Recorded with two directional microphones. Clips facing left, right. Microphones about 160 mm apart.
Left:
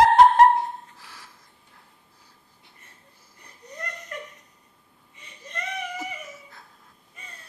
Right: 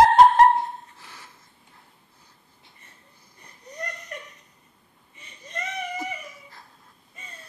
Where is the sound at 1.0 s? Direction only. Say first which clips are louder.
Right 1 dB; 5° left (ahead or behind).